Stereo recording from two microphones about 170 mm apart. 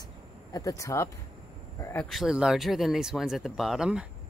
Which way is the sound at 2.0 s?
Centre (ahead or behind).